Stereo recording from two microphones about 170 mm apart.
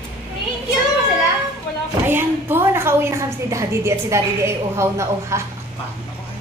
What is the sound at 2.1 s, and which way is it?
A woman's voice, 15° right (ahead or behind).